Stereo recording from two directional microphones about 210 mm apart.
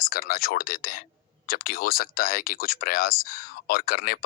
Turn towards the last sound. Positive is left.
turn(degrees=45)  # may be behind; listen again after turning